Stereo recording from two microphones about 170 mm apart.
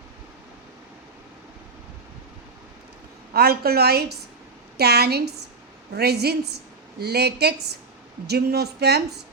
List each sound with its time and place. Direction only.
3.3 s a woman's voice: 65° right (ahead or behind)